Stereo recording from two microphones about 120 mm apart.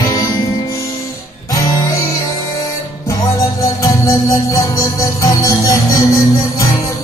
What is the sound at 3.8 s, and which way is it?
Music, 30° left (ahead or behind).